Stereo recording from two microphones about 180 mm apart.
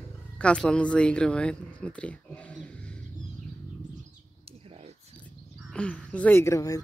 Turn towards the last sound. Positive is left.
turn(degrees=20)  # may be behind; listen again after turning